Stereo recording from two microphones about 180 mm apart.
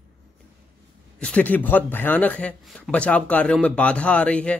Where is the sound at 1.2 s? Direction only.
10° left (ahead or behind).